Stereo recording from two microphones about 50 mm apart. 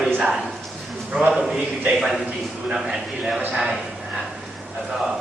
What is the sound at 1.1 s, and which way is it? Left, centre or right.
Speech, centre.